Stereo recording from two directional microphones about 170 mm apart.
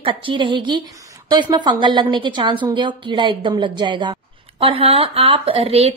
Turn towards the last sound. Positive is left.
turn(degrees=-35)  # may be behind; listen again after turning